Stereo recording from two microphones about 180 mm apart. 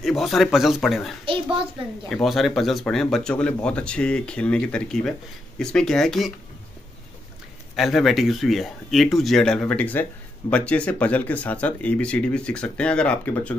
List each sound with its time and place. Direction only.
0.0 s speech: centre (ahead or behind)
1.2 s a sound: 30° right (ahead or behind)
2.2 s speech: centre (ahead or behind)
7.7 s speech: centre (ahead or behind)